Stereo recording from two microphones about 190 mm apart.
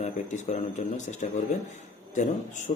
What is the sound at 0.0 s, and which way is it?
Speech, 35° left (ahead or behind).